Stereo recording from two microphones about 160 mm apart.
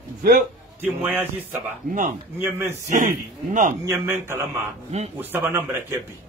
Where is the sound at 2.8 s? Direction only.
50° right (ahead or behind).